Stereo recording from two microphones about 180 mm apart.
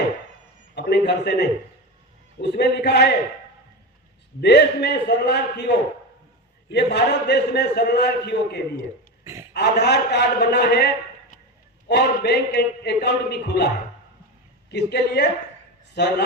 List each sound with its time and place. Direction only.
0.8 s a man's voice: 70° left (ahead or behind)
4.4 s a man's voice: 70° left (ahead or behind)
6.7 s a man's voice: 70° left (ahead or behind)
9.2 s a sound: 15° right (ahead or behind)
9.5 s a man's voice: 65° left (ahead or behind)
14.7 s a man's voice: 70° left (ahead or behind)